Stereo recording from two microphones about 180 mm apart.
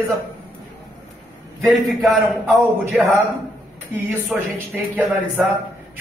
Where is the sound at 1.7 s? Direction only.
Centre (ahead or behind).